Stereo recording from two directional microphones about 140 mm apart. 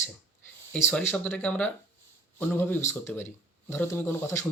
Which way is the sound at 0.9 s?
Centre (ahead or behind).